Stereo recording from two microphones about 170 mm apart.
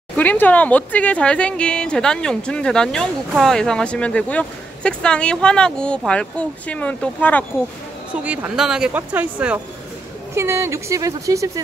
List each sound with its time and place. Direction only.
0.1 s speech: 10° left (ahead or behind)
8.1 s a woman's voice: 10° right (ahead or behind)